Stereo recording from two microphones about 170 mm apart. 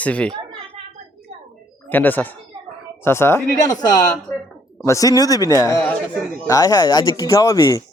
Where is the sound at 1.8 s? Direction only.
10° left (ahead or behind).